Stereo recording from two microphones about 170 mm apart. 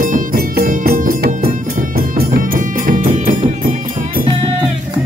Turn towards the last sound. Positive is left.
turn(degrees=-50)  # may be behind; listen again after turning